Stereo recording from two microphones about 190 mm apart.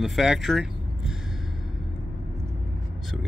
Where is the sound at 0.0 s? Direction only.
Centre (ahead or behind).